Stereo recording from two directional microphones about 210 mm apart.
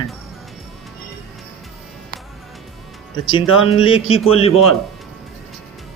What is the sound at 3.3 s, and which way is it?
Speech, 25° left (ahead or behind).